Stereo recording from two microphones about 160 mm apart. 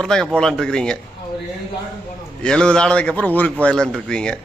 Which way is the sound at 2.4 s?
5° left (ahead or behind).